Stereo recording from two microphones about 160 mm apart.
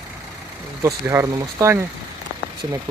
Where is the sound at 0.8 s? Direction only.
20° right (ahead or behind).